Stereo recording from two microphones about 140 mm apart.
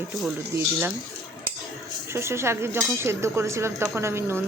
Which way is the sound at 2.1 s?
20° right (ahead or behind).